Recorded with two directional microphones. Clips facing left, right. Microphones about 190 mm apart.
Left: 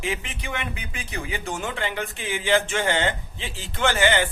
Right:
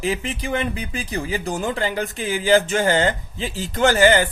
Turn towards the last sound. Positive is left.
turn(degrees=-40)  # may be behind; listen again after turning